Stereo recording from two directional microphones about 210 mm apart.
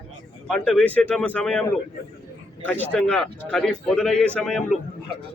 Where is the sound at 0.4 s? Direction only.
5° left (ahead or behind).